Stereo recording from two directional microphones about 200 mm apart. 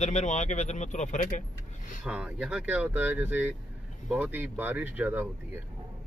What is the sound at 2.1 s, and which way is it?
Speech, 5° right (ahead or behind).